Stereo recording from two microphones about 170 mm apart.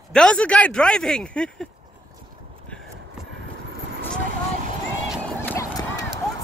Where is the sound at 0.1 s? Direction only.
5° left (ahead or behind).